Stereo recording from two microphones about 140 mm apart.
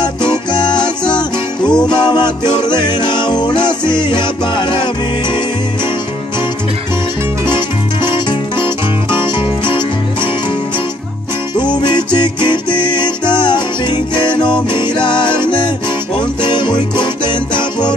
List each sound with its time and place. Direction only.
0.5 s music: 30° left (ahead or behind)
8.0 s music: 35° left (ahead or behind)
11.7 s music: 35° left (ahead or behind)